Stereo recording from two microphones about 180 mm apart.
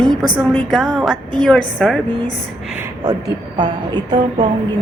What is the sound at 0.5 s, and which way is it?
A woman's voice, centre (ahead or behind).